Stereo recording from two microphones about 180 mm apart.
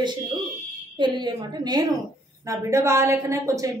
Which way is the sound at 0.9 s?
25° right (ahead or behind).